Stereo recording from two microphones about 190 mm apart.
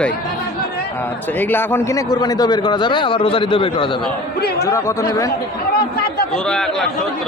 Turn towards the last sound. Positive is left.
turn(degrees=5)  # may be behind; listen again after turning